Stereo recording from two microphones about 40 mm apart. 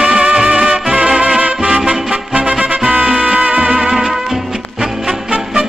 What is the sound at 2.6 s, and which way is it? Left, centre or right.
Music, right.